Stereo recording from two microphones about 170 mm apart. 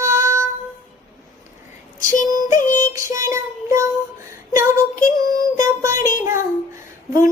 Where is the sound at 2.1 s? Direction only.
50° left (ahead or behind).